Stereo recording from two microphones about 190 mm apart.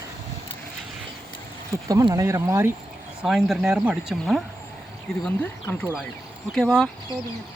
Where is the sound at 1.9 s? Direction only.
20° right (ahead or behind).